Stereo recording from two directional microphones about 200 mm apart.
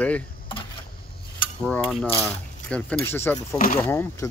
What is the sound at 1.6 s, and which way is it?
Speech, centre (ahead or behind).